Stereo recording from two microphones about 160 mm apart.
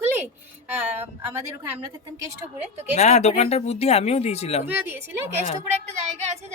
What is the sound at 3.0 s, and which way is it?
Speech, 45° left (ahead or behind).